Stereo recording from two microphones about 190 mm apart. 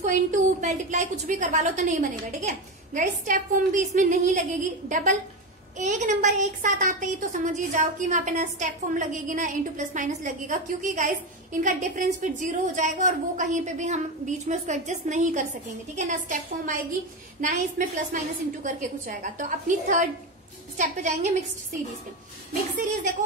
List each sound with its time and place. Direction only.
0.0 s a woman's voice: 40° right (ahead or behind)